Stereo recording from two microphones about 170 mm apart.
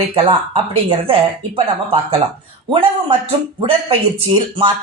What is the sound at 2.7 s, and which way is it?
Speech, 30° right (ahead or behind).